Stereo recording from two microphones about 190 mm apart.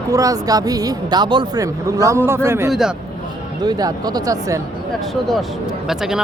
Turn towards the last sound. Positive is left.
turn(degrees=0)  # may be behind; listen again after turning